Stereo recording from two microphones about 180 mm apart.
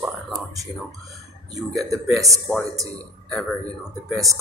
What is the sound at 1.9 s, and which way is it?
Speech, 20° right (ahead or behind).